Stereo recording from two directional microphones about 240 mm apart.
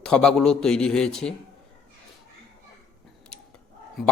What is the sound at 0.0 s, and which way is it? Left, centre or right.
Speech, centre.